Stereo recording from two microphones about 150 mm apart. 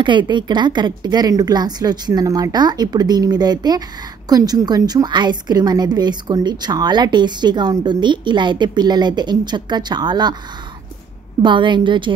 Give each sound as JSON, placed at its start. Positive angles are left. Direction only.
{"t": 0.0, "sound": "a woman's voice", "side_deg": -30}
{"t": 11.4, "sound": "a woman's voice", "side_deg": -30}